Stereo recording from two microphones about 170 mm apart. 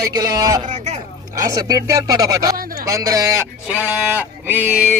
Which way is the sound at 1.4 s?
20° right (ahead or behind).